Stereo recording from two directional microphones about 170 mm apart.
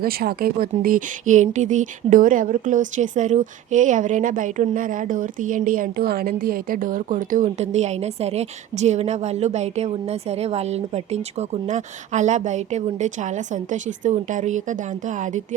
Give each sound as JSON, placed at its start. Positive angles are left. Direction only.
{"t": 0.0, "sound": "speech", "side_deg": -60}